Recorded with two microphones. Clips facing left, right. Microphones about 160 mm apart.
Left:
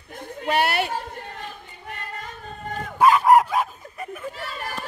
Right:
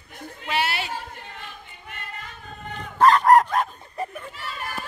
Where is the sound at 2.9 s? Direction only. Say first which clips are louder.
Even; 5° left (ahead or behind).